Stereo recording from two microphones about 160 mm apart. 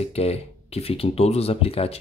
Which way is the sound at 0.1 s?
40° left (ahead or behind).